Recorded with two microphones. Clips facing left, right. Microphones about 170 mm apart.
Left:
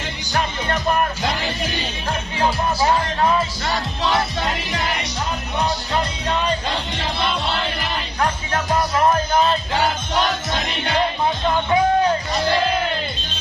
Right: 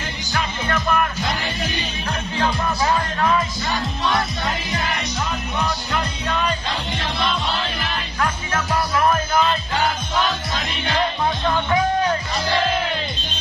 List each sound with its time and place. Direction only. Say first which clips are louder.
0.3 s music: left 2 dB; 40° left (ahead or behind)
2.4 s music: left 3 dB; 25° left (ahead or behind)